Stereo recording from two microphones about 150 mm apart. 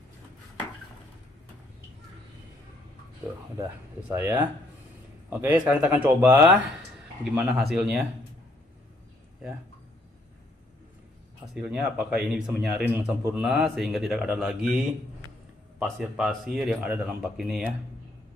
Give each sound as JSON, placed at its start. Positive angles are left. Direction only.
{"t": 3.2, "sound": "speech", "side_deg": -15}
{"t": 7.3, "sound": "speech", "side_deg": 0}
{"t": 11.5, "sound": "speech", "side_deg": -5}